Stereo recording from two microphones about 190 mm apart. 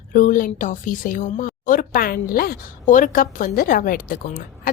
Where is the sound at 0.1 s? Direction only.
45° left (ahead or behind).